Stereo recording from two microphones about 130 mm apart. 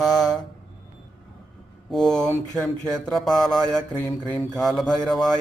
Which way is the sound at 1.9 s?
5° left (ahead or behind).